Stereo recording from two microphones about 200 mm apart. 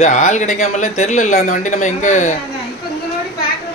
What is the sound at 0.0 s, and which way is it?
Speech, 35° left (ahead or behind).